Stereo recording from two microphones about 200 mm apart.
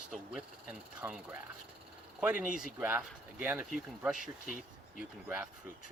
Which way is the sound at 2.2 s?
10° right (ahead or behind).